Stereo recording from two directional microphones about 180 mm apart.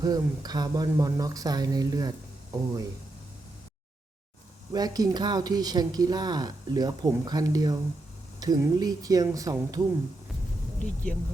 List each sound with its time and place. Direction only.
0.0 s speech: 20° right (ahead or behind)
4.7 s speech: 20° right (ahead or behind)